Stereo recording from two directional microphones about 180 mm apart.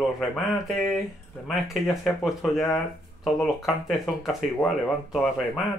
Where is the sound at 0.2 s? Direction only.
Centre (ahead or behind).